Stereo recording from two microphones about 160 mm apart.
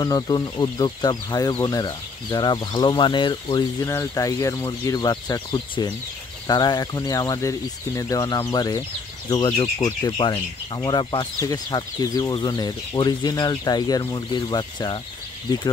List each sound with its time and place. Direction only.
0.0 s speech: 25° left (ahead or behind)
3.8 s speech: 20° left (ahead or behind)